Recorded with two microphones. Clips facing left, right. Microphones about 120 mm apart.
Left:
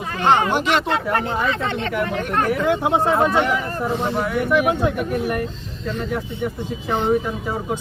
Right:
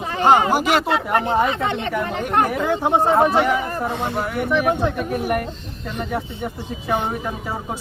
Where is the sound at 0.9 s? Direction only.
20° right (ahead or behind).